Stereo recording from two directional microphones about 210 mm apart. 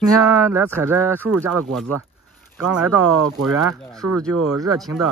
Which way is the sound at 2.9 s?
90° right.